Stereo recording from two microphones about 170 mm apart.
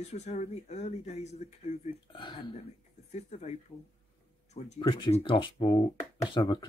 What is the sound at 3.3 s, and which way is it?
Speech, 40° left (ahead or behind).